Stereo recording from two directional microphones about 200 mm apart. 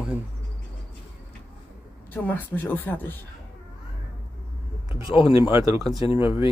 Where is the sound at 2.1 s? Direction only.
10° left (ahead or behind).